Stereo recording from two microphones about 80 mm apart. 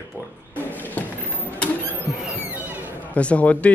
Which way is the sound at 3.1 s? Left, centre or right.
Centre.